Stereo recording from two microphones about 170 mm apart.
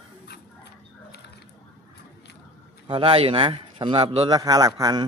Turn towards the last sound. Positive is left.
turn(degrees=-20)  # may be behind; listen again after turning